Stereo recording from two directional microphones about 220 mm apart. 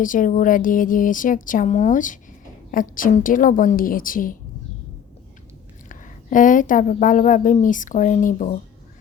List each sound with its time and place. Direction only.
0.0 s a woman's voice: 35° left (ahead or behind)
5.9 s a woman's voice: 35° left (ahead or behind)